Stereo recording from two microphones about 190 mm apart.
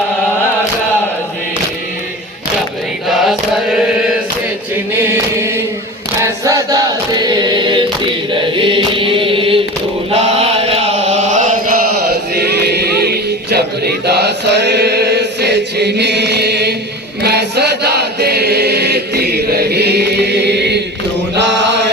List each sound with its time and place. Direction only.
3.1 s mantra: centre (ahead or behind)
6.1 s chant: 15° right (ahead or behind); by 11.8 s 45° right (ahead or behind)
12.4 s a sound: 60° right (ahead or behind)
17.2 s chant: 60° right (ahead or behind)